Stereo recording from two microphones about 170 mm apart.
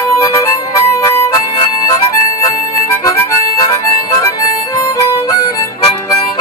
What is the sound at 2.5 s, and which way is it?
Harmonica, 20° left (ahead or behind).